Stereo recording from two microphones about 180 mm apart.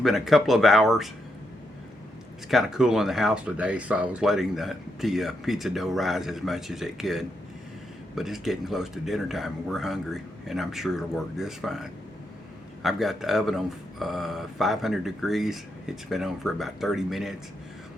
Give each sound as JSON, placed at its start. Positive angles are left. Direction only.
{"t": 0.0, "sound": "speech", "side_deg": 0}
{"t": 2.5, "sound": "speech", "side_deg": 0}